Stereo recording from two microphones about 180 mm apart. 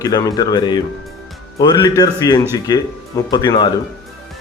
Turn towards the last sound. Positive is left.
turn(degrees=25)  # may be behind; listen again after turning